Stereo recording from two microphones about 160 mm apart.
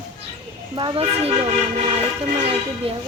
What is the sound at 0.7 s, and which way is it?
Speech, 35° right (ahead or behind).